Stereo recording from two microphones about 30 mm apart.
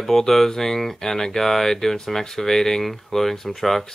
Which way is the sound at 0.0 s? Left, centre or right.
Centre.